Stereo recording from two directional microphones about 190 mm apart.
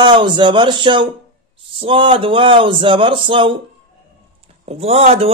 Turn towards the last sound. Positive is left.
turn(degrees=-35)  # may be behind; listen again after turning